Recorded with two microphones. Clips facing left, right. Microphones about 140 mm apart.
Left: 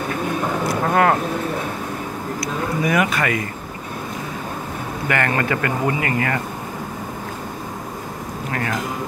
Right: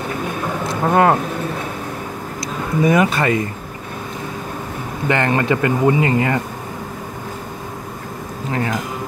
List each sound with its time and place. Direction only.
0.7 s vehicle: 25° right (ahead or behind)
2.8 s speech: 25° right (ahead or behind)
5.0 s speech: 25° right (ahead or behind)
8.5 s speech: 20° right (ahead or behind)